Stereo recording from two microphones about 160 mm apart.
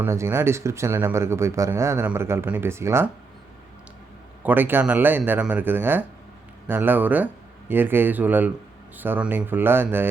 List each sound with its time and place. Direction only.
0.0 s speech: 15° right (ahead or behind)
4.4 s speech: 10° right (ahead or behind)